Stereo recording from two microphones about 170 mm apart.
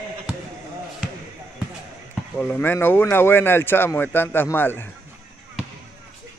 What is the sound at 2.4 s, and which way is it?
Speech, 10° left (ahead or behind).